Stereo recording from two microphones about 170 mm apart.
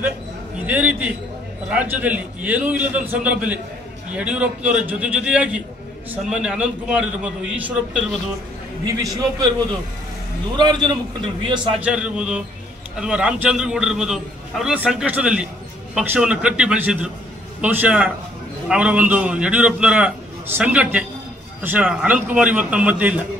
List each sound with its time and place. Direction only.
0.7 s a man's voice: 10° right (ahead or behind)
8.8 s a man's voice: 20° right (ahead or behind)
10.6 s a man's voice: 25° right (ahead or behind)
11.7 s a man's voice: 5° right (ahead or behind)